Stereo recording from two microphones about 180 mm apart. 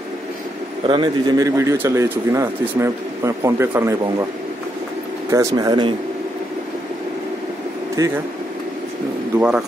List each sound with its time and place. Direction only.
0.8 s speech: 25° right (ahead or behind)
5.3 s speech: 15° right (ahead or behind)
8.0 s speech: 20° right (ahead or behind)
9.4 s speech: 5° right (ahead or behind)